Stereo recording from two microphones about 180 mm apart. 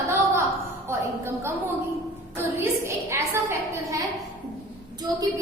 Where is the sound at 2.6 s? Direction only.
15° right (ahead or behind).